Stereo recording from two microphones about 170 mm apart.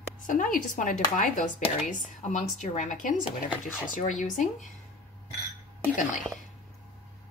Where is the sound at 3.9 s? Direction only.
50° left (ahead or behind).